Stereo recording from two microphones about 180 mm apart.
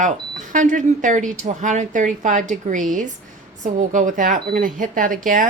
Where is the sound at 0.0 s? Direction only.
45° right (ahead or behind).